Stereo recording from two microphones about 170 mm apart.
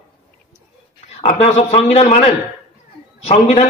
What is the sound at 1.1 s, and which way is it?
A man's voice, 40° left (ahead or behind).